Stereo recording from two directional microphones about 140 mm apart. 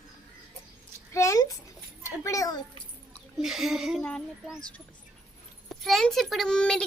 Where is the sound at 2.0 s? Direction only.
20° left (ahead or behind).